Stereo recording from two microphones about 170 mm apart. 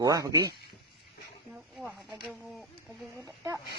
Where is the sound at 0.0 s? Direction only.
20° right (ahead or behind).